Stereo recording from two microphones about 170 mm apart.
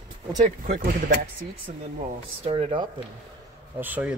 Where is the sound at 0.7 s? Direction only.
55° right (ahead or behind).